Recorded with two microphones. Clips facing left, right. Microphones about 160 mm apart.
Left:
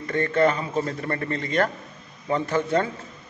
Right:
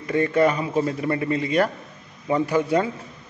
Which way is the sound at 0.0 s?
10° right (ahead or behind).